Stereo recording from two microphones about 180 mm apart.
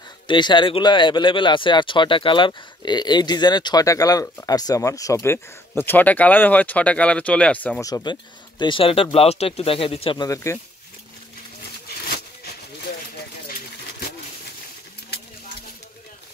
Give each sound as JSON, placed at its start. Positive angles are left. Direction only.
{"t": 0.3, "sound": "speech", "side_deg": 25}
{"t": 7.8, "sound": "speech", "side_deg": 20}
{"t": 10.2, "sound": "speech", "side_deg": 15}